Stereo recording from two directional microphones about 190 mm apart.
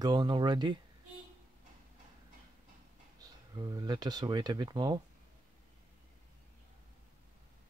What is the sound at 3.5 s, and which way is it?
Speech, 20° right (ahead or behind).